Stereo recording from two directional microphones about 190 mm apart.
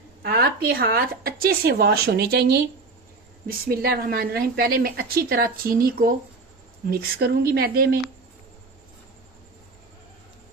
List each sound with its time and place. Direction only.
0.2 s a woman's voice: 55° right (ahead or behind)